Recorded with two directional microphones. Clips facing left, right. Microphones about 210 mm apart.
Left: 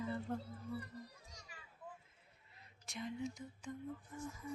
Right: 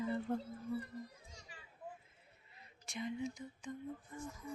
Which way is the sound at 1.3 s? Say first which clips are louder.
Right 1 dB; 30° right (ahead or behind).